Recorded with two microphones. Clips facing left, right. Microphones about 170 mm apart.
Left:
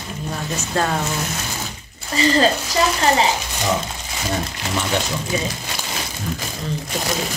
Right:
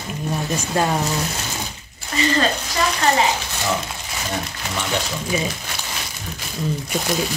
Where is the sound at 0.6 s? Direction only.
15° right (ahead or behind).